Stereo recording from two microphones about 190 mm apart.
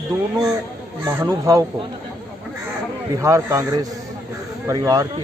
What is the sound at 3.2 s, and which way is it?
Speech, 15° right (ahead or behind).